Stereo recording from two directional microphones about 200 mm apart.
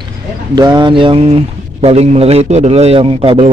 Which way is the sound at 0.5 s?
20° right (ahead or behind).